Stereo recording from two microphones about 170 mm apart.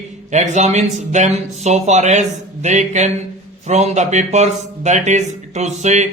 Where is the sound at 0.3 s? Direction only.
45° right (ahead or behind).